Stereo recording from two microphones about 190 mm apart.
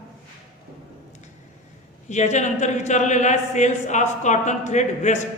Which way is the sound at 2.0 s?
40° left (ahead or behind).